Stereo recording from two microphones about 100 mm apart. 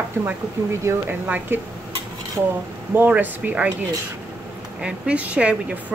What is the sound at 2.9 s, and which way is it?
Speech, 20° right (ahead or behind).